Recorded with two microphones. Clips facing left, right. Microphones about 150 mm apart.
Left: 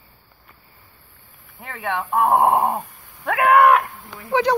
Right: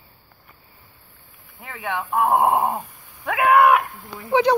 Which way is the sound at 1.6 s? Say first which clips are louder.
Left 2 dB; 10° right (ahead or behind).